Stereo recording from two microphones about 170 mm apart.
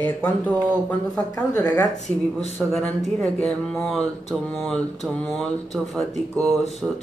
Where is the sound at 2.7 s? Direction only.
Centre (ahead or behind).